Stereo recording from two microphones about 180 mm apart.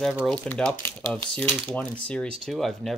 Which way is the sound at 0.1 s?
5° right (ahead or behind).